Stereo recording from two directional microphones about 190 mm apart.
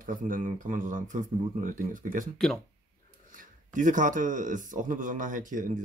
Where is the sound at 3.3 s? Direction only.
45° right (ahead or behind).